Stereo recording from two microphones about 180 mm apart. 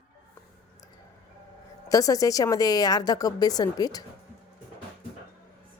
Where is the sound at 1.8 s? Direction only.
20° left (ahead or behind).